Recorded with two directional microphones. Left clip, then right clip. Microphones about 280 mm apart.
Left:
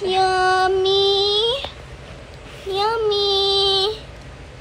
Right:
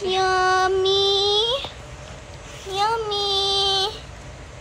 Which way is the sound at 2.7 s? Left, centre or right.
Centre.